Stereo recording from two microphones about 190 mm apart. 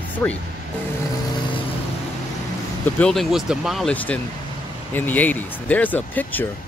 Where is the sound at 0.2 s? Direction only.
10° left (ahead or behind).